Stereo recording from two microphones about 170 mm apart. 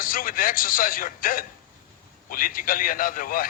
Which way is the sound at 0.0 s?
55° left (ahead or behind).